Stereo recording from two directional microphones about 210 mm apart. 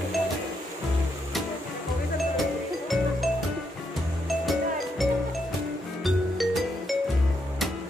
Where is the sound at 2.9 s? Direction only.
Centre (ahead or behind).